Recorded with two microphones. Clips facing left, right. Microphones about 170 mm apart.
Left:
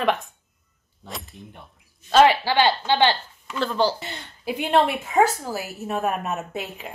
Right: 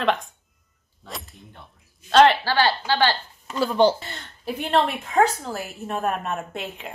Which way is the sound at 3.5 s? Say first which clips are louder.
Right 2 dB; 10° right (ahead or behind).